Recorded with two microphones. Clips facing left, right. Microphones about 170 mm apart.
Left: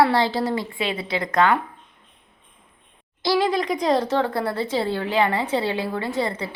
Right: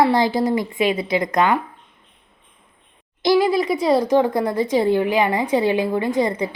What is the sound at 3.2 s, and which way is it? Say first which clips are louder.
A woman's voice: right 4 dB; 10° right (ahead or behind).